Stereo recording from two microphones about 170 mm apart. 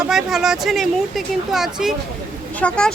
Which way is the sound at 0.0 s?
Centre (ahead or behind).